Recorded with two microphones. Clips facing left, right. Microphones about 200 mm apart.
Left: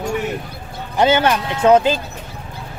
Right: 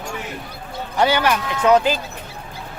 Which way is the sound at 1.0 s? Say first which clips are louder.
Left 3 dB; 25° left (ahead or behind).